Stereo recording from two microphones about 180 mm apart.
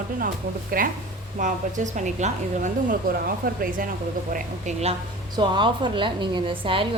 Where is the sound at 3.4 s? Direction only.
55° right (ahead or behind).